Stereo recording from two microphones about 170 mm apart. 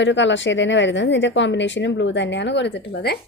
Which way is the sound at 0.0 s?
90° left.